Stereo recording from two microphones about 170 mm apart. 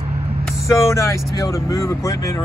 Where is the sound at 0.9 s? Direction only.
15° left (ahead or behind).